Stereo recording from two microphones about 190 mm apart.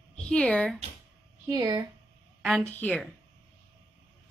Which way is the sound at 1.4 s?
20° right (ahead or behind).